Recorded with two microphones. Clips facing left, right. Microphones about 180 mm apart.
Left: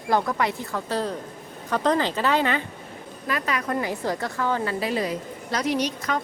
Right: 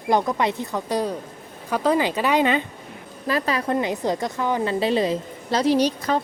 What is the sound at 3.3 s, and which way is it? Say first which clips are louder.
A woman's voice: right 4 dB; 30° right (ahead or behind).